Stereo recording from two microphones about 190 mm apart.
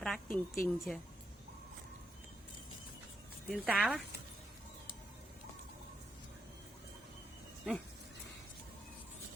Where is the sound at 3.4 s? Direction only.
5° right (ahead or behind).